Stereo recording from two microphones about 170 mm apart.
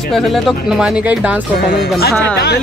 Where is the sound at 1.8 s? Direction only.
75° left (ahead or behind).